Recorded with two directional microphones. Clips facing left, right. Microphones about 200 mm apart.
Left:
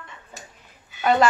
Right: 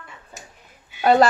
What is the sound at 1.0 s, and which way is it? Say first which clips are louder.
Speech: right 3 dB; 40° right (ahead or behind).